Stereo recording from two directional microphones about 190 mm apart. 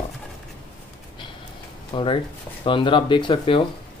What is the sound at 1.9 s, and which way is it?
Speech, 30° left (ahead or behind).